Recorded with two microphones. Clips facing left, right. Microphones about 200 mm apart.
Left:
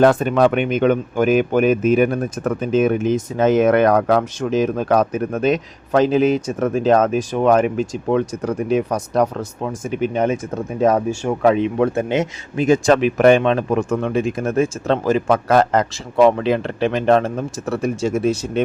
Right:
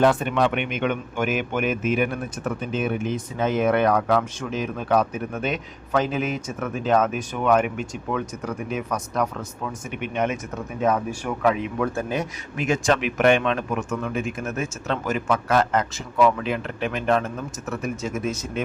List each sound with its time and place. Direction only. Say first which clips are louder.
0.2 s speech: left 7 dB; 40° left (ahead or behind)
3.6 s speech: left 4 dB; 85° left
3.8 s speech: left 5 dB; 45° left (ahead or behind); by 12.6 s 25° left (ahead or behind)
12.6 s speech: left 8 dB; 35° left (ahead or behind)